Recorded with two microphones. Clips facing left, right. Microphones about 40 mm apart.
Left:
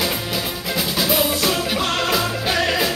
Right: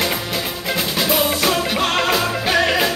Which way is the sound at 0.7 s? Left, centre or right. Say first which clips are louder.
Right 1 dB; centre.